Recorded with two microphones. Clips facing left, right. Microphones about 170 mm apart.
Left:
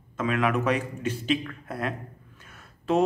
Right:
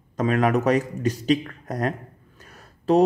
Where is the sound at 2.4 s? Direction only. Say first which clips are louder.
Right 5 dB; 35° right (ahead or behind).